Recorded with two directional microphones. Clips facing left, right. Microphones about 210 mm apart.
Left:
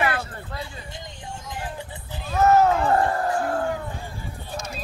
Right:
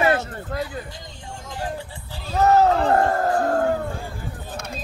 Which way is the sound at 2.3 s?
35° right (ahead or behind).